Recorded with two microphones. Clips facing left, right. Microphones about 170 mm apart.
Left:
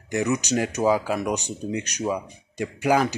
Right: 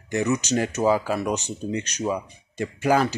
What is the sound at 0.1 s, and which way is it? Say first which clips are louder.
Speech: even; 10° left (ahead or behind).